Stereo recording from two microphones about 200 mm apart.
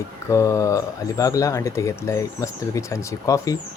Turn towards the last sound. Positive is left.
turn(degrees=15)  # may be behind; listen again after turning